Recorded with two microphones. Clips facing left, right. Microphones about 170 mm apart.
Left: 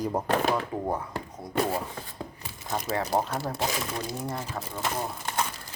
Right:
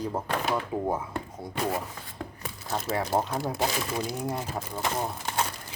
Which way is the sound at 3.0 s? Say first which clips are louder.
Even; 5° left (ahead or behind).